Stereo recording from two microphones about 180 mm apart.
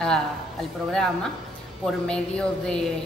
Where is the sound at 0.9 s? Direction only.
5° left (ahead or behind).